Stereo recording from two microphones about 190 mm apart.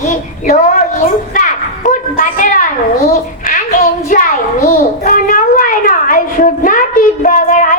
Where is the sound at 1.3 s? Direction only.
45° left (ahead or behind).